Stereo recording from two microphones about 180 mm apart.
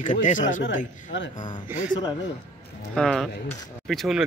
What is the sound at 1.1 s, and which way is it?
Speech, 90° left.